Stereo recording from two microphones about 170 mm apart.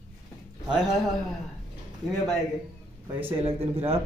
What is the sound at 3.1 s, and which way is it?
Speech, 30° right (ahead or behind).